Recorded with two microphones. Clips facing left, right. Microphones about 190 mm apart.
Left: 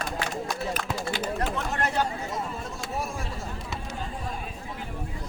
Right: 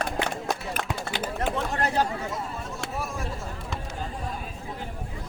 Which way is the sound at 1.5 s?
35° right (ahead or behind).